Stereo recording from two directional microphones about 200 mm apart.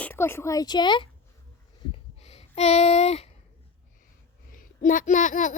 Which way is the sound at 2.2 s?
30° left (ahead or behind).